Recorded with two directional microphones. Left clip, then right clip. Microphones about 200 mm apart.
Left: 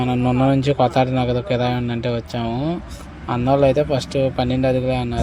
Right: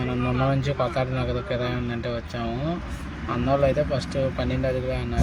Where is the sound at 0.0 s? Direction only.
30° left (ahead or behind).